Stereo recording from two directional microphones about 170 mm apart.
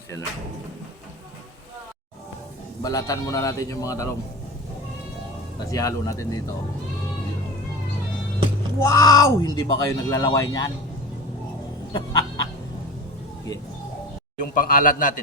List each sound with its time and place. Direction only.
2.8 s speech: 20° left (ahead or behind)
5.7 s speech: 20° left (ahead or behind)
8.8 s speech: 20° left (ahead or behind)
11.9 s chicken: 25° left (ahead or behind)
14.3 s a man's voice: 55° left (ahead or behind)